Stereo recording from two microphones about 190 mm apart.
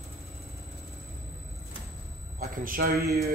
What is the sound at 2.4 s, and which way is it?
Speech, 50° right (ahead or behind).